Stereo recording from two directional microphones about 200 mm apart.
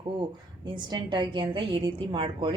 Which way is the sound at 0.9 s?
20° right (ahead or behind).